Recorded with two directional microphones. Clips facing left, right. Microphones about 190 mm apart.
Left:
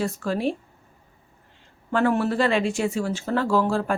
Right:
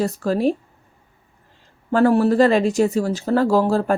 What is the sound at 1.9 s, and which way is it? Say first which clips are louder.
A woman's voice: right 6 dB; 40° right (ahead or behind).